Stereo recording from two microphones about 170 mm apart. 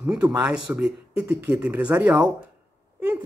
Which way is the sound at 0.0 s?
5° right (ahead or behind).